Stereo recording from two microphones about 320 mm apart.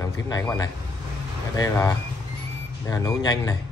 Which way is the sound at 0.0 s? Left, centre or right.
Centre.